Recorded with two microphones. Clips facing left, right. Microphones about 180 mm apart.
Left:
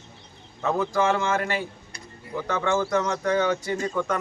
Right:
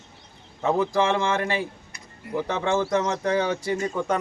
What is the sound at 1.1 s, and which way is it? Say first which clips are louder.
Speech: right 1 dB; 30° right (ahead or behind).